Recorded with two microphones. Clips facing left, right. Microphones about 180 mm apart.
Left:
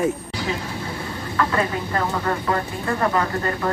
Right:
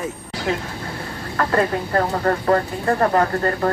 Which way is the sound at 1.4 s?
45° right (ahead or behind).